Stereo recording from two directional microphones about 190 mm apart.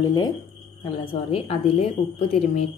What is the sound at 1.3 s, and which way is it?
Speech, 30° left (ahead or behind).